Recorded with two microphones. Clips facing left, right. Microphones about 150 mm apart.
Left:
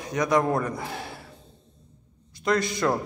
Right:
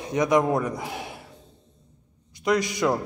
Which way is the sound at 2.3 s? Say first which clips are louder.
Right 1 dB; 15° right (ahead or behind).